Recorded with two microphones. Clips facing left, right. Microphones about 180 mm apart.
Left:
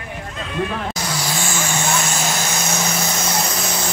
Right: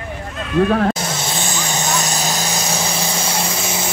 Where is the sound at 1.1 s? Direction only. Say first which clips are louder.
Even; 25° right (ahead or behind).